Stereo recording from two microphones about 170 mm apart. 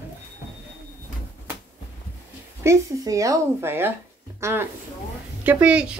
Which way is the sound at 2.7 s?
20° right (ahead or behind).